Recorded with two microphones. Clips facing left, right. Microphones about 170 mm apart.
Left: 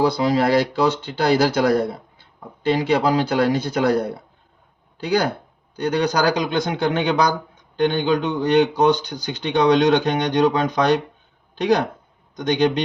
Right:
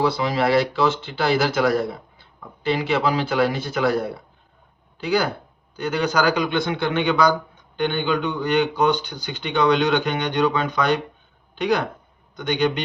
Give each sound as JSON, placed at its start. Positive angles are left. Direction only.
{"t": 0.0, "sound": "speech", "side_deg": 40}
{"t": 2.6, "sound": "speech", "side_deg": 40}
{"t": 5.0, "sound": "speech", "side_deg": 40}